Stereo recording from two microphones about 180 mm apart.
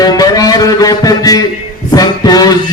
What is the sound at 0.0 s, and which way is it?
Music, 20° left (ahead or behind).